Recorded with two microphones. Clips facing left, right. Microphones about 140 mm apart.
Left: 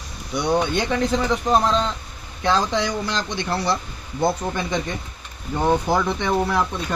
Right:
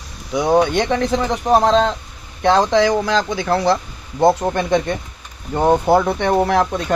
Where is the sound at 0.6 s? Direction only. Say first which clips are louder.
Right 6 dB; 75° right (ahead or behind).